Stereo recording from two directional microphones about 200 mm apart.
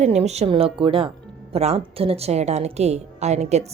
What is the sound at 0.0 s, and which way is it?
A woman's voice, 35° right (ahead or behind).